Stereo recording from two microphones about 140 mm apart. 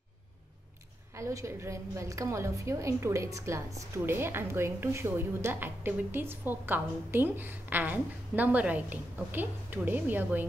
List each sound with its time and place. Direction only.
1.1 s a woman's voice: 20° right (ahead or behind)